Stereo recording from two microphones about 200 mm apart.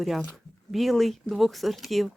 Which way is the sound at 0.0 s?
Centre (ahead or behind).